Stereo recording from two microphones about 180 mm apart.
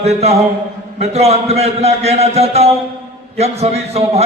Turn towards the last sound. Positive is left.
turn(degrees=-35)  # may be behind; listen again after turning